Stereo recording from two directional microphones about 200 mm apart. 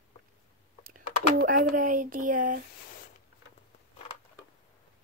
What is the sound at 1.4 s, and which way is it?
Speech, 45° right (ahead or behind).